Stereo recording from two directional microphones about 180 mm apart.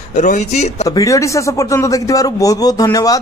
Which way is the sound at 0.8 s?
20° left (ahead or behind).